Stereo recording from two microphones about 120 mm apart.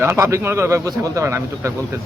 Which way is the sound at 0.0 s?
25° right (ahead or behind).